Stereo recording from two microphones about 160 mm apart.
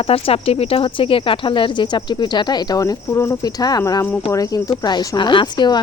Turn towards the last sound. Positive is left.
turn(degrees=30)  # may be behind; listen again after turning